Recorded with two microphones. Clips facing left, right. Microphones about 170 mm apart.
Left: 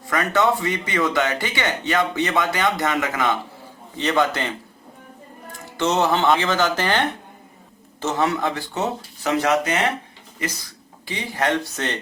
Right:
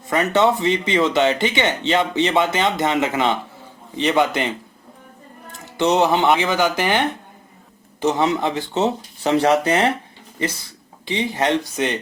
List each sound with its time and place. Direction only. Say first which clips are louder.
0.1 s speech: right 3 dB; 25° right (ahead or behind)
5.7 s speech: right 3 dB; 15° right (ahead or behind)
11.0 s speech: right 3 dB; 25° right (ahead or behind)